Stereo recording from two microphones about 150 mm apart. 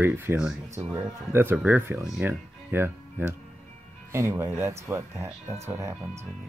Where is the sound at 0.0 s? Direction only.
15° right (ahead or behind).